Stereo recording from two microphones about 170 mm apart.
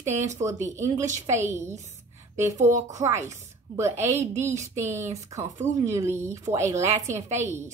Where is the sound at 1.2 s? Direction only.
15° right (ahead or behind).